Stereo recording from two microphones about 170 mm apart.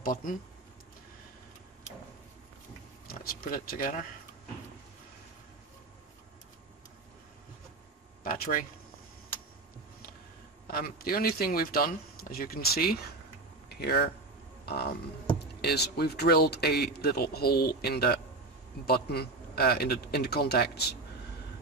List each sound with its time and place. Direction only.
0.0 s speech: 55° left (ahead or behind)
3.1 s speech: 60° left (ahead or behind)
8.2 s speech: 55° left (ahead or behind)
10.7 s speech: 60° left (ahead or behind)